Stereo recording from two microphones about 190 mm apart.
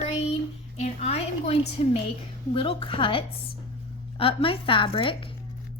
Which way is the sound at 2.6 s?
25° left (ahead or behind).